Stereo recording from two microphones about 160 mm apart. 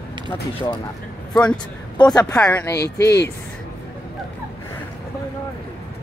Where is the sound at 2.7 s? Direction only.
90° left.